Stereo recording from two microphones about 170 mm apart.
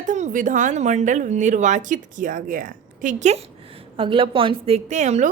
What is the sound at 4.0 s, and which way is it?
A woman's voice, 30° right (ahead or behind).